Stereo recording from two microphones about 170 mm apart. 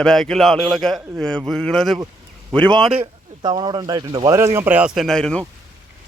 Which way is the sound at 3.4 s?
25° right (ahead or behind).